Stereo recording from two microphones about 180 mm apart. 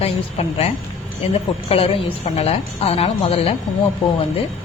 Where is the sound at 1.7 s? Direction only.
35° left (ahead or behind).